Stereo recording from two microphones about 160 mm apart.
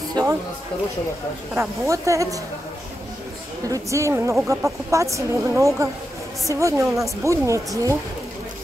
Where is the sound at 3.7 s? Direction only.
20° right (ahead or behind).